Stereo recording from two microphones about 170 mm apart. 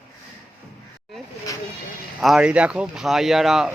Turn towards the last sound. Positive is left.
turn(degrees=0)  # may be behind; listen again after turning